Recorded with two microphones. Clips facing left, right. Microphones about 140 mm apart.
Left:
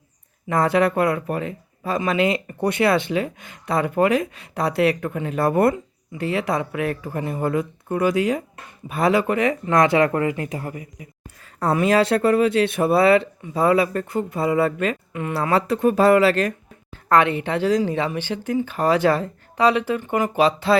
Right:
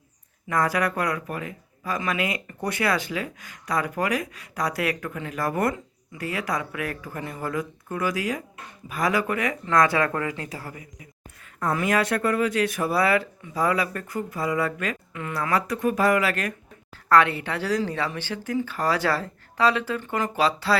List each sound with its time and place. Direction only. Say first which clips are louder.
0.4 s speech: left 5 dB; 25° left (ahead or behind)